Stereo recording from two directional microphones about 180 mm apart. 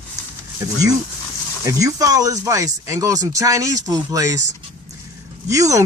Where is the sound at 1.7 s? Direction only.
20° right (ahead or behind).